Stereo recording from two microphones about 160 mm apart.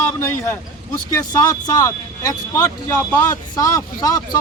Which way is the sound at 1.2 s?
20° left (ahead or behind).